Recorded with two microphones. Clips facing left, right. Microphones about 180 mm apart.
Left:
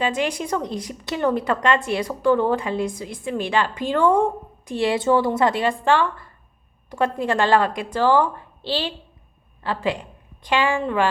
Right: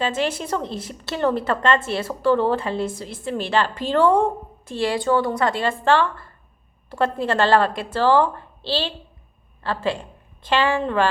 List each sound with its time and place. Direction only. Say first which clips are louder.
0.0 s a woman's voice: even; 15° left (ahead or behind)